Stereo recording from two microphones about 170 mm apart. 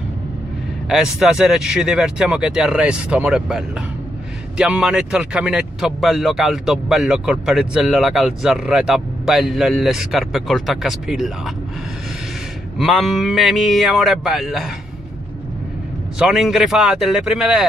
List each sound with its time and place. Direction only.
1.2 s speech: 5° right (ahead or behind)
12.7 s speech: centre (ahead or behind)
16.2 s speech: 5° right (ahead or behind)